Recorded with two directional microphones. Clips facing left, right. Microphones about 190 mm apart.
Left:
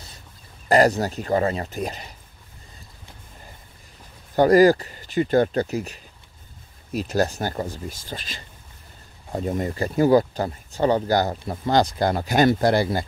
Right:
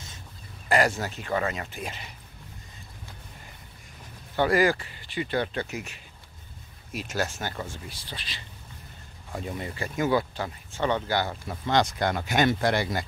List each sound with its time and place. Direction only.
0.7 s speech: 40° left (ahead or behind)
4.4 s speech: 40° left (ahead or behind)